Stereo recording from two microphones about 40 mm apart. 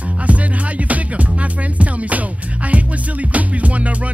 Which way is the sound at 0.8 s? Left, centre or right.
Right.